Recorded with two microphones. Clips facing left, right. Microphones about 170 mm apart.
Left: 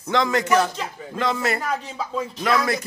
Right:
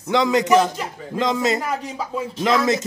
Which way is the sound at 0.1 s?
15° right (ahead or behind).